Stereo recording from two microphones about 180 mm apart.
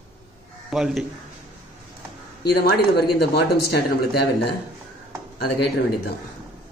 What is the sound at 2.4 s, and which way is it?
A man's voice, 65° left (ahead or behind).